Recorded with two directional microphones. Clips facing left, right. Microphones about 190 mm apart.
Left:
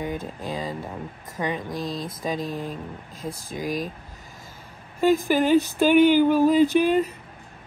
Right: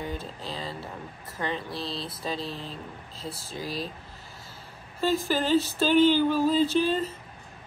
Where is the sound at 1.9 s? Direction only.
45° left (ahead or behind).